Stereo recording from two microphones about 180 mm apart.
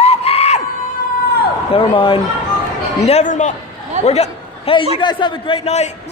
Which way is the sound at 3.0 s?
40° left (ahead or behind).